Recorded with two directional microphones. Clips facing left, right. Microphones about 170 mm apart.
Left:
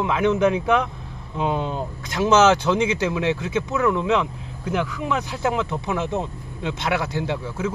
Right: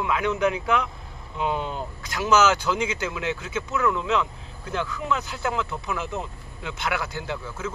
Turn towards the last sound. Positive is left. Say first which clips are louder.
# left 6 dB
turn(degrees=20)  # may be behind; listen again after turning